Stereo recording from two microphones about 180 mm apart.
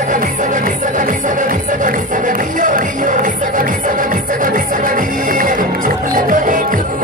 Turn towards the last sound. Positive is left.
turn(degrees=-45)  # may be behind; listen again after turning